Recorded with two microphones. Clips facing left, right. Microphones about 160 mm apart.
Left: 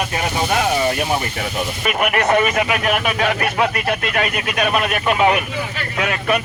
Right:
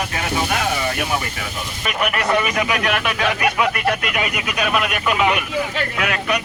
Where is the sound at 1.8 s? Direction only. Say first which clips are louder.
Left 3 dB; 50° left (ahead or behind).